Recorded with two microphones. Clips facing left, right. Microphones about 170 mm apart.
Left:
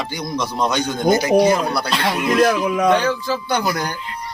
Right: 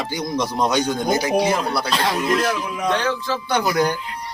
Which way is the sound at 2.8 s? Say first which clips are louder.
Left 2 dB; 5° left (ahead or behind).